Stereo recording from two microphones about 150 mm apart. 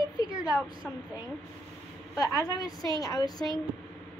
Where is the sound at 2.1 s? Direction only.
25° left (ahead or behind).